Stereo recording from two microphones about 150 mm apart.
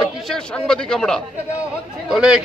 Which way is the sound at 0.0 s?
5° left (ahead or behind).